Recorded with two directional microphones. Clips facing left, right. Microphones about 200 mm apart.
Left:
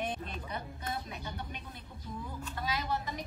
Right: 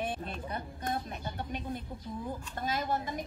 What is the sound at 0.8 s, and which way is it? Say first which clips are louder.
A woman's voice: right 4 dB; 45° right (ahead or behind).